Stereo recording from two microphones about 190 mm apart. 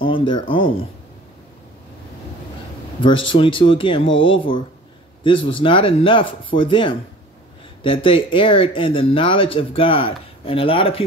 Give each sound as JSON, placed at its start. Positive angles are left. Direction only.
{"t": 0.0, "sound": "speech", "side_deg": 25}
{"t": 3.0, "sound": "speech", "side_deg": 25}
{"t": 4.1, "sound": "speech", "side_deg": 90}
{"t": 5.2, "sound": "speech", "side_deg": 25}